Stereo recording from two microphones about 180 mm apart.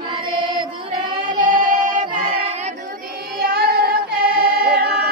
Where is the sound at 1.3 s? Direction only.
45° right (ahead or behind).